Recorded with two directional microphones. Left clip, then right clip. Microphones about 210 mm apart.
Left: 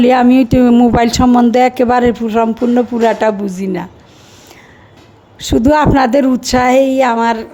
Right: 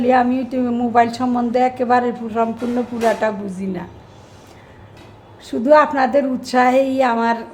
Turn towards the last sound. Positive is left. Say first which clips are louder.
# left 5 dB
turn(degrees=35)  # may be behind; listen again after turning